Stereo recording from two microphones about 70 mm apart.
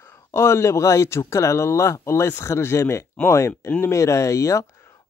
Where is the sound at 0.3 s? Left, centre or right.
Left.